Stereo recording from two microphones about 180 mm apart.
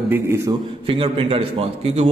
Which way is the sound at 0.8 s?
30° right (ahead or behind).